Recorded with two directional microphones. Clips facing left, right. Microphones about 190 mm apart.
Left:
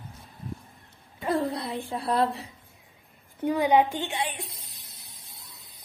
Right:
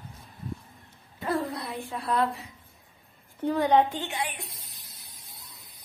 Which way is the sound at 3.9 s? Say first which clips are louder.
Left 2 dB; 20° left (ahead or behind).